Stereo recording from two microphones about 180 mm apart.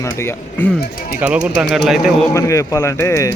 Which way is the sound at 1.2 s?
5° right (ahead or behind).